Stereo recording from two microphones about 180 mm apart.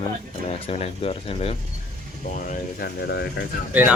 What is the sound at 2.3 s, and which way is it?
Speech, 50° left (ahead or behind).